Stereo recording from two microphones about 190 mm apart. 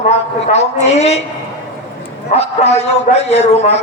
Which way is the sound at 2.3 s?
35° left (ahead or behind).